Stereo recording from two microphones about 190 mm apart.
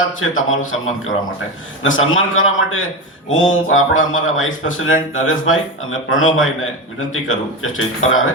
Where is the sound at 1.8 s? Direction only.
90° left.